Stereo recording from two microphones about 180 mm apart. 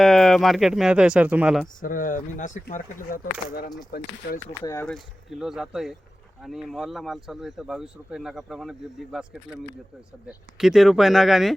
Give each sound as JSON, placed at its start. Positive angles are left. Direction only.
{"t": 0.0, "sound": "speech", "side_deg": 0}
{"t": 1.8, "sound": "speech", "side_deg": 50}
{"t": 3.9, "sound": "speech", "side_deg": 60}
{"t": 4.6, "sound": "speech", "side_deg": 15}
{"t": 4.9, "sound": "speech", "side_deg": 0}